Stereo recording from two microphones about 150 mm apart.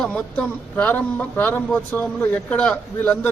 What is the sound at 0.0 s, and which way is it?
A man's voice, 5° left (ahead or behind).